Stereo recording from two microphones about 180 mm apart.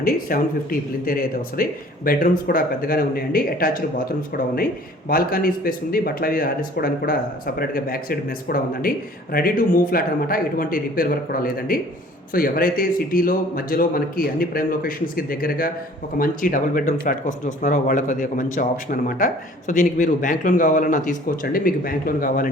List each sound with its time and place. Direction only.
0.0 s speech: 50° left (ahead or behind)